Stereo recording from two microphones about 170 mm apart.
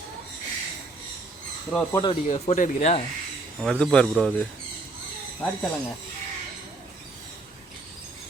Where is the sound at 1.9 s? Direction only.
25° left (ahead or behind).